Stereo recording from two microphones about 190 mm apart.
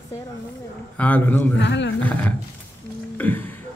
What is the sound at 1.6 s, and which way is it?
Speech, 70° left (ahead or behind).